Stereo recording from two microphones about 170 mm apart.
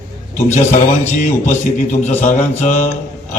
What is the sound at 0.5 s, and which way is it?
A man's voice, 45° left (ahead or behind).